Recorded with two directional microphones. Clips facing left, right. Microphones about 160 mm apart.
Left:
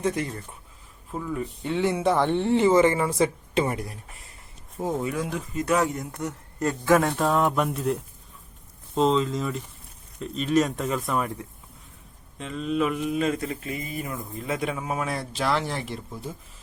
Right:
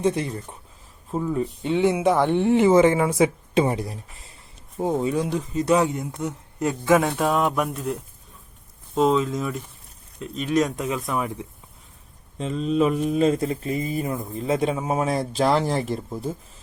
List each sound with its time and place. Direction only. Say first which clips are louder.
0.0 s speech: right 4 dB; 20° right (ahead or behind)
3.6 s speech: right 4 dB; 25° right (ahead or behind)
6.1 s speech: right 3 dB; 15° right (ahead or behind)
7.2 s speech: right 1 dB; 5° right (ahead or behind)
12.4 s speech: right 4 dB; 35° right (ahead or behind)